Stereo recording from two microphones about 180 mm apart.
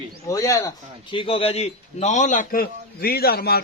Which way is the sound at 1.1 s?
30° left (ahead or behind).